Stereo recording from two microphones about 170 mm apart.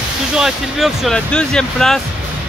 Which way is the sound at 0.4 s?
Centre (ahead or behind).